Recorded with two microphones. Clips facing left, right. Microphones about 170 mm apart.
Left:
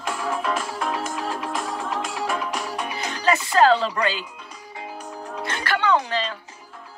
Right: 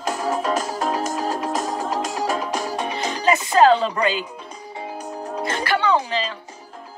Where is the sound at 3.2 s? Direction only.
20° right (ahead or behind).